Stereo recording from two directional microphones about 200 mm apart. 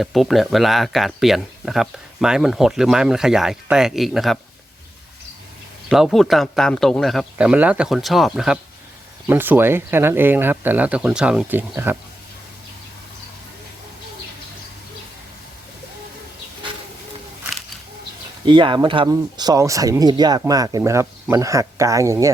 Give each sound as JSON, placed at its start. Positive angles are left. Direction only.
{"t": 0.0, "sound": "speech", "side_deg": 0}
{"t": 5.9, "sound": "speech", "side_deg": 0}
{"t": 18.4, "sound": "speech", "side_deg": -25}